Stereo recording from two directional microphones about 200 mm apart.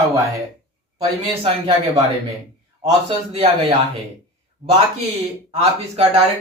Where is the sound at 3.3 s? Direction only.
30° right (ahead or behind).